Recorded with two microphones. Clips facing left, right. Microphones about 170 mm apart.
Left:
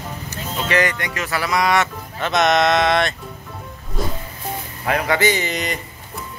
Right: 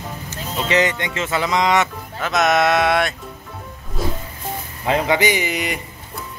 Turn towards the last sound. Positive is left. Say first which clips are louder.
# even
turn(degrees=-10)  # may be behind; listen again after turning